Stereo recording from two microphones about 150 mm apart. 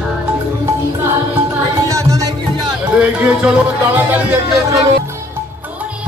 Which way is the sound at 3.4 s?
10° right (ahead or behind).